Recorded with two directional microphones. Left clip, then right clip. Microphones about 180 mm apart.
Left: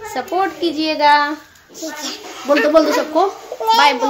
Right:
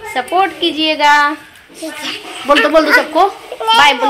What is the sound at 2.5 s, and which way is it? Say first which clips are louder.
Speech: right 4 dB; centre (ahead or behind).